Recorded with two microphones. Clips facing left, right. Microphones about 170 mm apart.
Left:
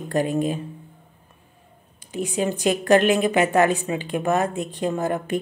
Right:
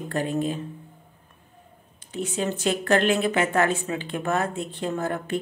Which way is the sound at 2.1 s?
15° left (ahead or behind).